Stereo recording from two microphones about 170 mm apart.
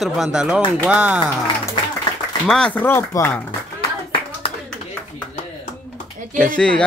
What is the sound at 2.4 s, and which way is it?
Speech, 5° left (ahead or behind).